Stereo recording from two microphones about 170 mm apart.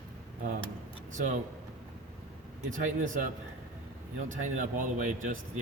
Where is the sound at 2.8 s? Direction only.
45° right (ahead or behind).